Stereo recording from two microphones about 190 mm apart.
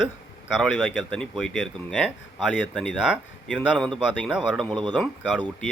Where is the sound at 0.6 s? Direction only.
Centre (ahead or behind).